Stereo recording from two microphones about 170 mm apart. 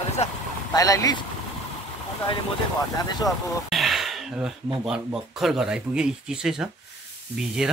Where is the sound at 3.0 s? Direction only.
25° left (ahead or behind).